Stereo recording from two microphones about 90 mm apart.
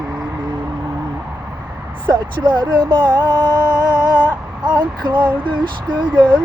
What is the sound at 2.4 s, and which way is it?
Music, 60° right (ahead or behind).